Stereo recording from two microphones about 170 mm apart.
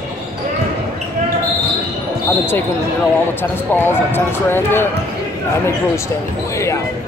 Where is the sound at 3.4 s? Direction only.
10° left (ahead or behind).